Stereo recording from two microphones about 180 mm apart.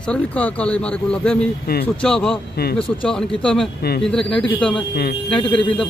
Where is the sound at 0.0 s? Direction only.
5° left (ahead or behind).